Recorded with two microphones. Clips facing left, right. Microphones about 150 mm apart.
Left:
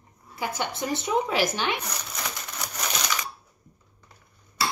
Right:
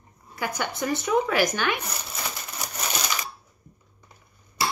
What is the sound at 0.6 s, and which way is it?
Speech, 25° left (ahead or behind).